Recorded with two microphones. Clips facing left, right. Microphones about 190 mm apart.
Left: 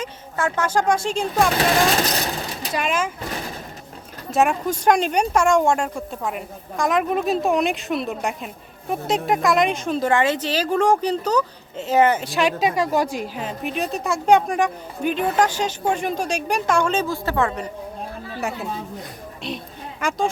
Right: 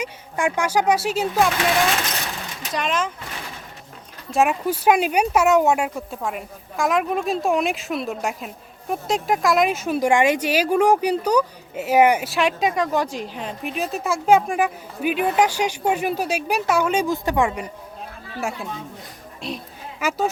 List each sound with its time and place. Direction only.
0.0 s speech: 15° right (ahead or behind)
1.5 s vehicle: 35° left (ahead or behind)
2.7 s speech: 5° left (ahead or behind)
4.4 s a woman's voice: 5° right (ahead or behind)
12.3 s a woman's voice: centre (ahead or behind)
18.3 s a woman's voice: centre (ahead or behind)